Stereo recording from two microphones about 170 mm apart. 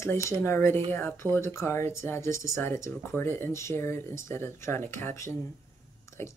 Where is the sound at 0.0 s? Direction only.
15° left (ahead or behind).